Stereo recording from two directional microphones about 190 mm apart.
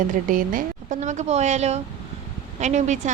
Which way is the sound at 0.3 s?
45° right (ahead or behind).